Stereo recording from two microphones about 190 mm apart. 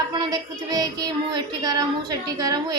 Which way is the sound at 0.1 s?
20° right (ahead or behind).